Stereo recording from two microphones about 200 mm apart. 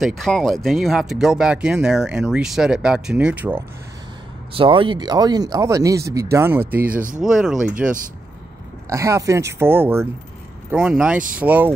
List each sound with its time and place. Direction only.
0.0 s speech: centre (ahead or behind)
4.6 s speech: 25° right (ahead or behind)
6.8 s speech: 45° right (ahead or behind)
7.2 s speech: 5° right (ahead or behind)
8.8 s speech: 15° right (ahead or behind)